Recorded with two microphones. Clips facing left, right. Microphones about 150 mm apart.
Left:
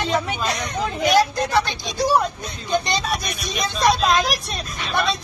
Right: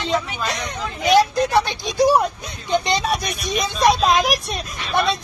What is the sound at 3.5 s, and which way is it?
Speech, 15° right (ahead or behind).